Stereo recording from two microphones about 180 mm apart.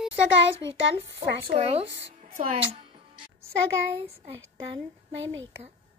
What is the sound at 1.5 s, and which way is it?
Speech, 35° right (ahead or behind).